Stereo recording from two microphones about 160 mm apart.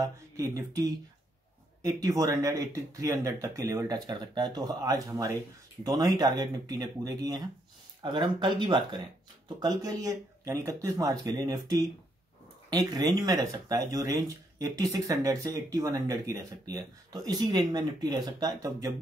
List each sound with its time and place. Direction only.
0.0 s speech: 20° right (ahead or behind)